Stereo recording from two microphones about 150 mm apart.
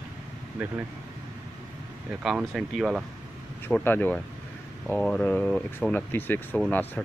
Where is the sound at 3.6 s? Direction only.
10° left (ahead or behind).